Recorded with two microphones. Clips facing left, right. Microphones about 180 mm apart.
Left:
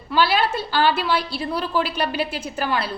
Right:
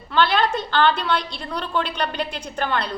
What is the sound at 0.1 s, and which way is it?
A woman's voice, 5° left (ahead or behind).